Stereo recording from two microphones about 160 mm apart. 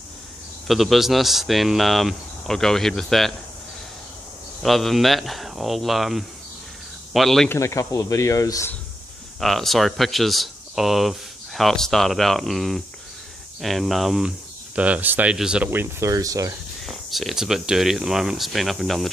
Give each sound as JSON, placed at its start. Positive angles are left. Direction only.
{"t": 0.7, "sound": "speech", "side_deg": 0}
{"t": 4.6, "sound": "speech", "side_deg": 0}
{"t": 7.4, "sound": "speech", "side_deg": 20}
{"t": 9.4, "sound": "speech", "side_deg": 0}
{"t": 16.8, "sound": "speech", "side_deg": 0}